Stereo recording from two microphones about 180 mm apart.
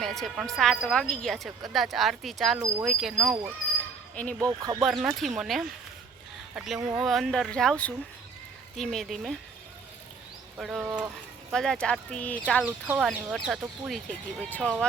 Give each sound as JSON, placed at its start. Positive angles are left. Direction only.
{"t": 0.0, "sound": "speech", "side_deg": 0}
{"t": 4.4, "sound": "speech", "side_deg": -20}
{"t": 4.8, "sound": "speech", "side_deg": 0}
{"t": 10.6, "sound": "speech", "side_deg": 0}